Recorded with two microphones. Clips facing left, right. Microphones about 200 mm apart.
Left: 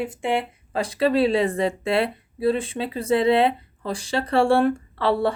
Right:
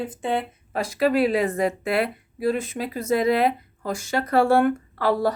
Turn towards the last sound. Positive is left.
turn(degrees=30)  # may be behind; listen again after turning